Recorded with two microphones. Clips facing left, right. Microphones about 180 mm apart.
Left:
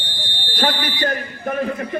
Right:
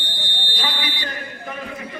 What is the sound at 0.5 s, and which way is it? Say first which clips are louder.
Fire alarm: left 8 dB; 50° left (ahead or behind).